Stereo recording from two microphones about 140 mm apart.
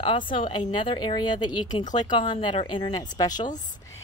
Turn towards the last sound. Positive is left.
turn(degrees=30)  # may be behind; listen again after turning